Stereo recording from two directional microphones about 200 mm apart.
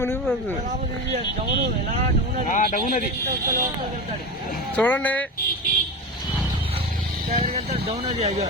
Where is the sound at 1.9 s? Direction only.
35° right (ahead or behind).